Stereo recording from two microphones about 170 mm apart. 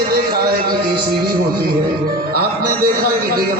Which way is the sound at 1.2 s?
60° right (ahead or behind).